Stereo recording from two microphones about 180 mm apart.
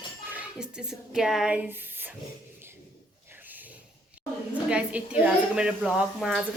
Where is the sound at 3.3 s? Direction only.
10° right (ahead or behind).